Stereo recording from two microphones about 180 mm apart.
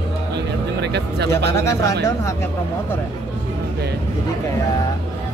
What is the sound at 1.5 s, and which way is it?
Speech, 15° left (ahead or behind).